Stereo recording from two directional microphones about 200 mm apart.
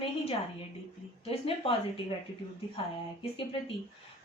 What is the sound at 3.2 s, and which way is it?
Speech, 25° left (ahead or behind).